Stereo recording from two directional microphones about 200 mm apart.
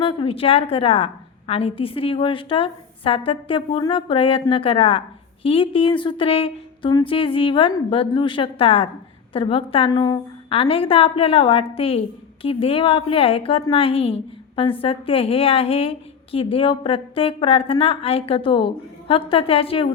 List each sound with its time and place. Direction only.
0.0 s a woman's voice: 25° left (ahead or behind)